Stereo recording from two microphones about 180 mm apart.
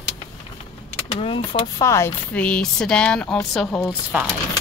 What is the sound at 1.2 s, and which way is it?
Speech, 30° left (ahead or behind).